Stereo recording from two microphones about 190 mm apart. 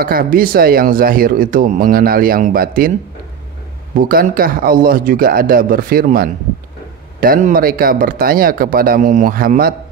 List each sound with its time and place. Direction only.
0.0 s speech: 50° right (ahead or behind)
4.0 s speech: 50° right (ahead or behind)